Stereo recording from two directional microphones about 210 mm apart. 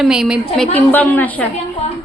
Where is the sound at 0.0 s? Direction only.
Centre (ahead or behind).